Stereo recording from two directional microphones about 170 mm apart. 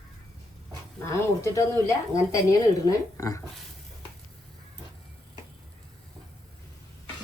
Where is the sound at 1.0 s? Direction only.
15° left (ahead or behind).